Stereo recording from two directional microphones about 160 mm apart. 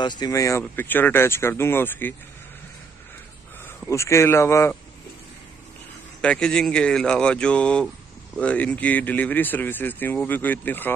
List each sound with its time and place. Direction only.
0.0 s speech: 25° left (ahead or behind)
3.6 s speech: 15° left (ahead or behind)
6.2 s speech: 5° left (ahead or behind)